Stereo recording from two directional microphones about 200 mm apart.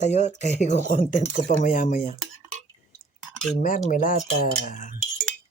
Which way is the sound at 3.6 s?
40° left (ahead or behind).